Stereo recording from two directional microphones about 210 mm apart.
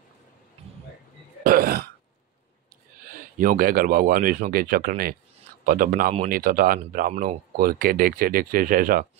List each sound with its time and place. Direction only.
1.4 s throat clearing: 45° right (ahead or behind)
3.1 s speech: 40° right (ahead or behind)